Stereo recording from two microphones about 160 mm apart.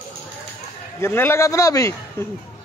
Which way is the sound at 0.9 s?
15° left (ahead or behind).